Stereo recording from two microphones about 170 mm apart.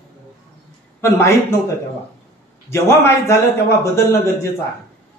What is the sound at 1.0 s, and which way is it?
Speech, 15° left (ahead or behind).